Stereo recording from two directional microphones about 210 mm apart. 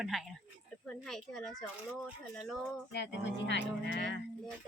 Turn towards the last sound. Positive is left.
turn(degrees=55)  # may be behind; listen again after turning